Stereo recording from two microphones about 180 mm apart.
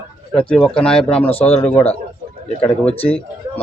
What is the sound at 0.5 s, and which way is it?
Speech, 5° left (ahead or behind).